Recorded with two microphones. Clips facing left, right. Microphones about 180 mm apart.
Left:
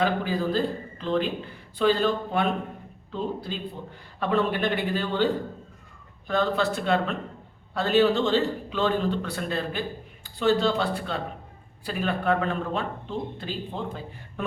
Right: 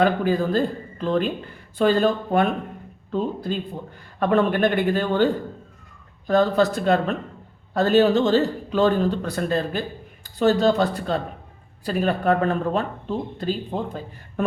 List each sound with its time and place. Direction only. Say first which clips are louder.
0.0 s a man's voice: right 5 dB; 50° right (ahead or behind)